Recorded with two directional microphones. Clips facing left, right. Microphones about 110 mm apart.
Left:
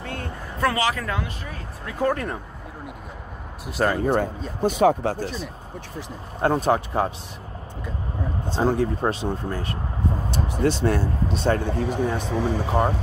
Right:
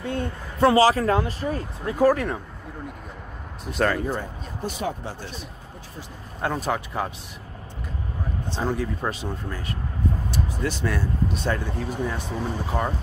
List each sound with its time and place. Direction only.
0.0 s speech: 20° right (ahead or behind); by 2.0 s 35° right (ahead or behind)
2.0 s speech: 5° right (ahead or behind)
3.6 s speech: 10° left (ahead or behind)
4.0 s speech: 60° left (ahead or behind); by 5.3 s 75° left (ahead or behind)
6.6 s speech: 30° left (ahead or behind)
8.5 s speech: 35° left (ahead or behind)
11.6 s speech: 70° left (ahead or behind); by 12.5 s 90° left